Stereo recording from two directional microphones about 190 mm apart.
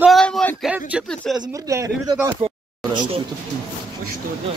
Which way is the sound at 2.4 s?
25° right (ahead or behind).